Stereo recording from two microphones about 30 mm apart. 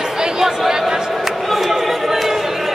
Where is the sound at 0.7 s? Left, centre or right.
Centre.